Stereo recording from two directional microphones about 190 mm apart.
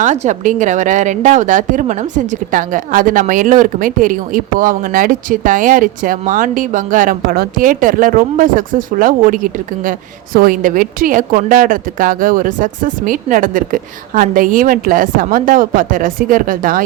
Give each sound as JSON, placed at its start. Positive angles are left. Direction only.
{"t": 0.0, "sound": "a woman's voice", "side_deg": -40}